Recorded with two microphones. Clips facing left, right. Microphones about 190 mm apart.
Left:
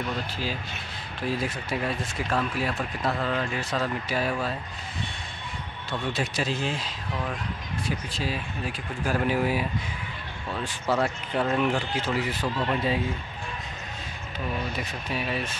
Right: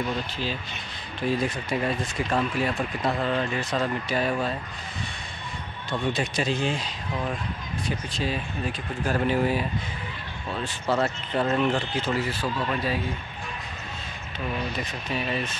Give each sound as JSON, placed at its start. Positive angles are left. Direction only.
{"t": 1.2, "sound": "speech", "side_deg": 5}
{"t": 6.1, "sound": "speech", "side_deg": 5}
{"t": 8.1, "sound": "speech", "side_deg": 5}
{"t": 10.9, "sound": "speech", "side_deg": 10}
{"t": 14.8, "sound": "speech", "side_deg": 10}